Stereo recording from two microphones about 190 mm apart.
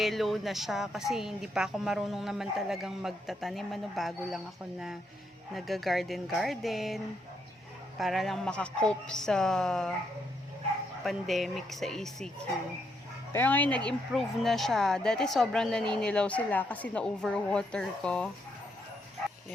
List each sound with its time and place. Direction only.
0.0 s speech: centre (ahead or behind)
5.5 s speech: centre (ahead or behind)
11.0 s speech: centre (ahead or behind)
13.3 s speech: 10° left (ahead or behind)